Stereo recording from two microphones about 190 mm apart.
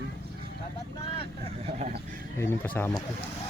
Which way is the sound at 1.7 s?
40° right (ahead or behind).